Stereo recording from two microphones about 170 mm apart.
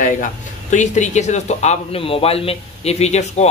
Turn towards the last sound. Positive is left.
turn(degrees=40)  # may be behind; listen again after turning